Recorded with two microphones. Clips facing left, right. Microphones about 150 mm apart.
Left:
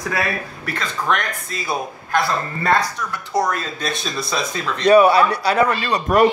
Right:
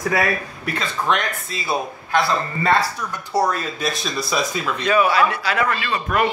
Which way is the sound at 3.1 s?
5° right (ahead or behind).